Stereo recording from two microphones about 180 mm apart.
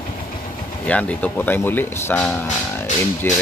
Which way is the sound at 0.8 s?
5° left (ahead or behind).